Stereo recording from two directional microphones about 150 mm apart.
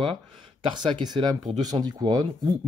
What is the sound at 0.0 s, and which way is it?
Speech, 35° right (ahead or behind).